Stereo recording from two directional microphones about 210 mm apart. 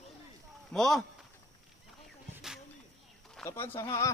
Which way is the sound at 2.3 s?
5° right (ahead or behind).